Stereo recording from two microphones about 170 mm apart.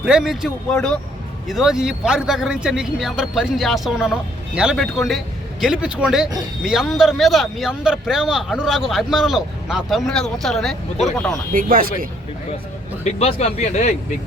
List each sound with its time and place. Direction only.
0.0 s a man's voice: 5° right (ahead or behind)
11.5 s speech: 55° right (ahead or behind)
13.1 s speech: 40° left (ahead or behind)